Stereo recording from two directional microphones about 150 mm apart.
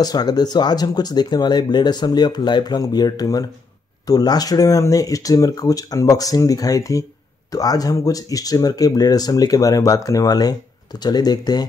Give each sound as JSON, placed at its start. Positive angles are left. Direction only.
{"t": 0.0, "sound": "speech", "side_deg": 25}